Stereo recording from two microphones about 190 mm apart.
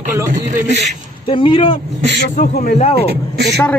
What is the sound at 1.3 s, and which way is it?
Speech, 25° left (ahead or behind).